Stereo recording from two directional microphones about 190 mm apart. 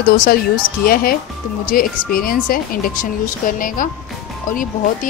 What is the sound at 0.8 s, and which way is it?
A woman's voice, 50° left (ahead or behind).